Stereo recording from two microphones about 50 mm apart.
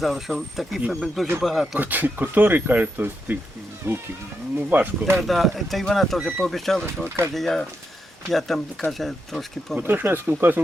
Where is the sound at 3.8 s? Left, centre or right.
Right.